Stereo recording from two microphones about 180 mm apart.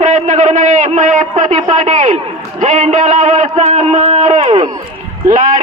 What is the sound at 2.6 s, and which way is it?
A man's voice, 40° right (ahead or behind).